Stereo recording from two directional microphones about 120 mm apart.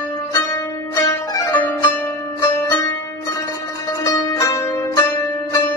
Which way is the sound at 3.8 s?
25° left (ahead or behind).